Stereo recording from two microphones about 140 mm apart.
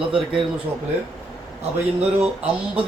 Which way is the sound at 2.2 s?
10° right (ahead or behind).